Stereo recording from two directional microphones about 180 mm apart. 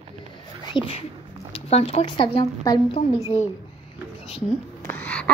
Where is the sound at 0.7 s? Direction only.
30° left (ahead or behind).